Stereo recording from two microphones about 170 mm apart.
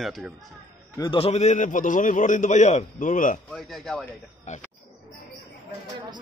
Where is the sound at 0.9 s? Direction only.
30° left (ahead or behind); by 3.3 s 50° left (ahead or behind).